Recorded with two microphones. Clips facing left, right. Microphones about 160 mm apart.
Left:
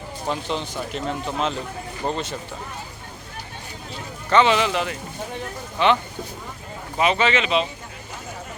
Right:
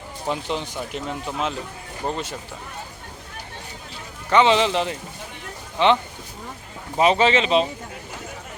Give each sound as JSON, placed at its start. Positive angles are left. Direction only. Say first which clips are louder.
{"t": 0.3, "sound": "speech", "louder": "even", "side_deg": -15}
{"t": 4.3, "sound": "speech", "louder": "right 1 dB", "side_deg": -20}
{"t": 6.9, "sound": "speech", "louder": "right 3 dB", "side_deg": -35}